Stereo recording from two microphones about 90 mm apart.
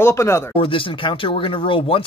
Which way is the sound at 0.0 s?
30° left (ahead or behind).